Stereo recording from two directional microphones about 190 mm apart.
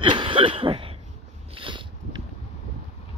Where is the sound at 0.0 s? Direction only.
25° right (ahead or behind).